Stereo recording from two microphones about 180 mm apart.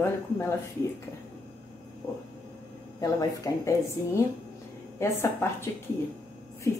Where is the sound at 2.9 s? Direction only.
15° left (ahead or behind).